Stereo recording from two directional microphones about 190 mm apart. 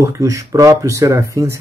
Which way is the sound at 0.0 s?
15° right (ahead or behind).